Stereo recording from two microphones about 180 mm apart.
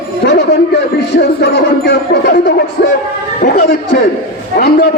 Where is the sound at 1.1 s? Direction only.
65° left (ahead or behind).